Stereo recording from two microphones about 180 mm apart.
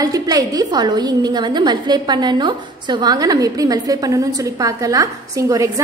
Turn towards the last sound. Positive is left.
turn(degrees=-20)  # may be behind; listen again after turning